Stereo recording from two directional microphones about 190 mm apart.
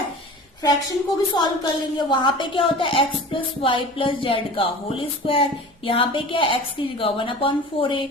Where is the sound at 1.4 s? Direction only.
20° left (ahead or behind).